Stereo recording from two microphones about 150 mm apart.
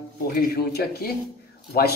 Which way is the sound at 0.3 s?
85° left.